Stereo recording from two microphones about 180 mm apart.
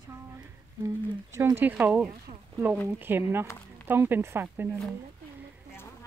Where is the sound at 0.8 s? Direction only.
15° right (ahead or behind).